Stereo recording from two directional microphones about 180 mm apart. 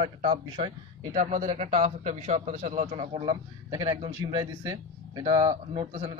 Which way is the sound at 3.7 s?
30° right (ahead or behind).